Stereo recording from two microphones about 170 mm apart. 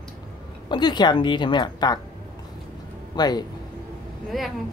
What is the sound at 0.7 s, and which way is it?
Speech, 25° left (ahead or behind).